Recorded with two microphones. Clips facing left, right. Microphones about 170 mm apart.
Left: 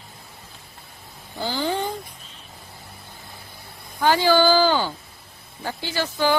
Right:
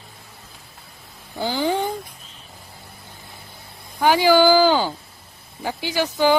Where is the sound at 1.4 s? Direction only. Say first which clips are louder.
Right 3 dB; 15° right (ahead or behind).